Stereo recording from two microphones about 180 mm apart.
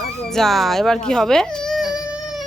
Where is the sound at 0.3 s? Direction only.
Centre (ahead or behind).